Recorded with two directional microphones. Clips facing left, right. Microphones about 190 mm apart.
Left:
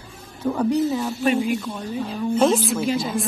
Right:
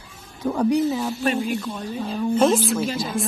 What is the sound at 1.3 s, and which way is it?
Speech, 15° left (ahead or behind).